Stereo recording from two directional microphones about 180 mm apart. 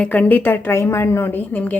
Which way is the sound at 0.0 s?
10° left (ahead or behind).